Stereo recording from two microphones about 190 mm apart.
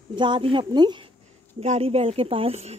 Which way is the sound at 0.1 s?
25° right (ahead or behind).